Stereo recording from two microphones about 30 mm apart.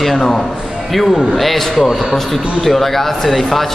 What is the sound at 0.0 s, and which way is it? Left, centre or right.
Speech, centre.